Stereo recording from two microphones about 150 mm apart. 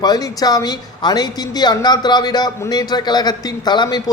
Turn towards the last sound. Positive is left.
turn(degrees=30)  # may be behind; listen again after turning